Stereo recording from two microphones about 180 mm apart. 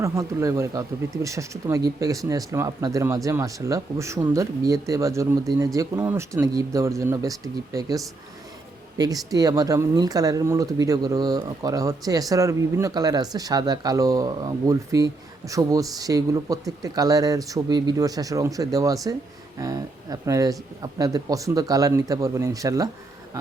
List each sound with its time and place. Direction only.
0.0 s speech: 15° right (ahead or behind)